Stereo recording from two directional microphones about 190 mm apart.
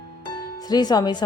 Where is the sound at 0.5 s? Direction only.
20° left (ahead or behind).